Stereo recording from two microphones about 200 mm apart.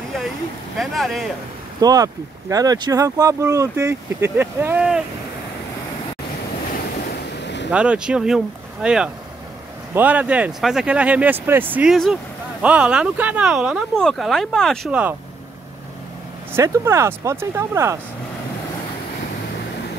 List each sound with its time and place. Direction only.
0.7 s speech: centre (ahead or behind)
1.8 s speech: 20° right (ahead or behind)
7.4 s vehicle: 60° left (ahead or behind)
7.7 s speech: 5° right (ahead or behind)
16.5 s speech: 15° right (ahead or behind)